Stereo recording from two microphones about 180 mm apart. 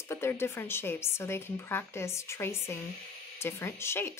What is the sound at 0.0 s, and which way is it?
A woman's voice, 15° left (ahead or behind).